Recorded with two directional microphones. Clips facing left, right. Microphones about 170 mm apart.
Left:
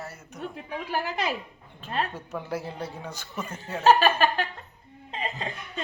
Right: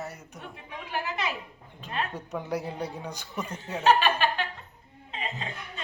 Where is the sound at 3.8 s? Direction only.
40° left (ahead or behind).